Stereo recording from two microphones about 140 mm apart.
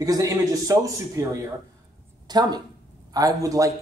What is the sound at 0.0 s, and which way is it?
Speech, 25° right (ahead or behind).